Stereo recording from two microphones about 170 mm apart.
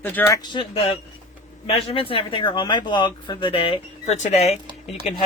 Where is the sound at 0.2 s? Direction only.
10° left (ahead or behind).